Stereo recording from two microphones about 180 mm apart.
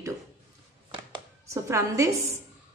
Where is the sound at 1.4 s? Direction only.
15° right (ahead or behind).